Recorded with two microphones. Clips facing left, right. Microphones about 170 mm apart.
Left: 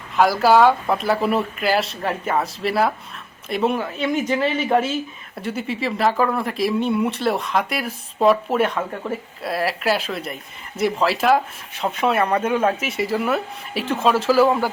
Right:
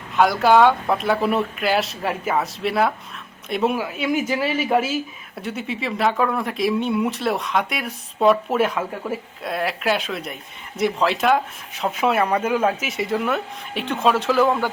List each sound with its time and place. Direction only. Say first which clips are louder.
0.2 s speech: even; centre (ahead or behind)